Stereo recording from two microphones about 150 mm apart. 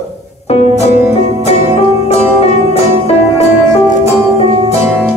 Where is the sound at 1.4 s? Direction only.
45° left (ahead or behind).